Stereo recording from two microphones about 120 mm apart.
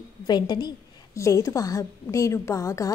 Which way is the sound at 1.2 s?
25° left (ahead or behind).